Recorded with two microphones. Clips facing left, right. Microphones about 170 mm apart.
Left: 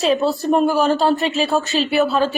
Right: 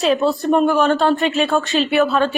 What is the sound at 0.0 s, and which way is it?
Speech, centre (ahead or behind).